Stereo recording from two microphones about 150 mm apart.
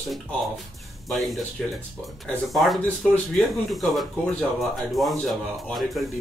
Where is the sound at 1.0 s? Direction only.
Centre (ahead or behind).